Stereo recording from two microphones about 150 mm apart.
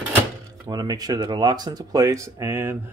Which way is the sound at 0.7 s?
25° right (ahead or behind).